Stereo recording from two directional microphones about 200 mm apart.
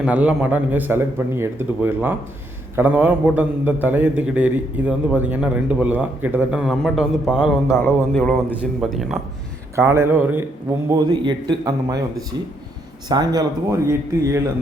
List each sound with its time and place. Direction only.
0.0 s a man's voice: 5° right (ahead or behind)
7.7 s a man's voice: 10° left (ahead or behind)
9.7 s a man's voice: 10° right (ahead or behind)
10.8 s a man's voice: 20° right (ahead or behind)
13.1 s a man's voice: 20° right (ahead or behind)